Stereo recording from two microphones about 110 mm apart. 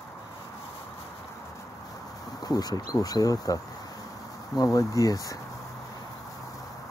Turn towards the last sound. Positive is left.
turn(degrees=30)  # may be behind; listen again after turning